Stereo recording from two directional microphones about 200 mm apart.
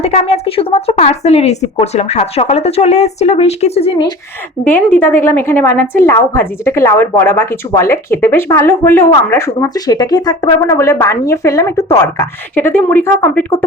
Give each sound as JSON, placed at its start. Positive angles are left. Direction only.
{"t": 0.0, "sound": "a woman's voice", "side_deg": 35}
{"t": 4.6, "sound": "a woman's voice", "side_deg": 10}